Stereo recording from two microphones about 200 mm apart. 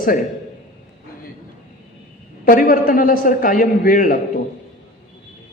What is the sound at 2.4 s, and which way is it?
A woman's voice, 45° left (ahead or behind).